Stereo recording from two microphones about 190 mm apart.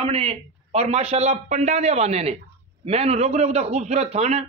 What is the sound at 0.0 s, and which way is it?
A man's voice, 30° right (ahead or behind).